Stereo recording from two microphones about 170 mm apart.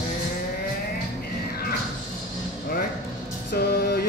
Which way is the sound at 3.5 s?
65° left (ahead or behind).